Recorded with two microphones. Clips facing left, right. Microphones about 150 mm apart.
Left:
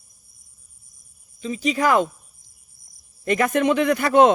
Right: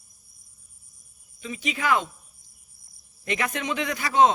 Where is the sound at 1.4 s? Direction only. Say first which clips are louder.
Left 8 dB; 35° left (ahead or behind).